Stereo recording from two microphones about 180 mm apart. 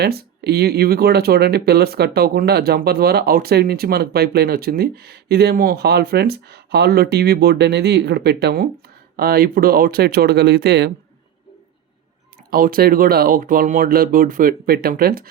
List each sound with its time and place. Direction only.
0.0 s speech: 60° right (ahead or behind)
12.5 s speech: 55° right (ahead or behind)